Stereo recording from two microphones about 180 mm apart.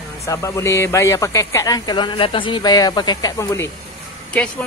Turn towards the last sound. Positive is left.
turn(degrees=5)  # may be behind; listen again after turning